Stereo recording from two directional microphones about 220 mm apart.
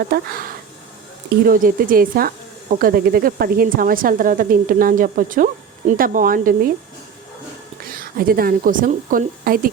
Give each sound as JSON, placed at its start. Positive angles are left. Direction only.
{"t": 0.0, "sound": "speech", "side_deg": -45}
{"t": 7.9, "sound": "speech", "side_deg": -40}